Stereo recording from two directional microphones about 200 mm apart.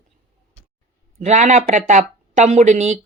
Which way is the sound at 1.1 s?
35° right (ahead or behind).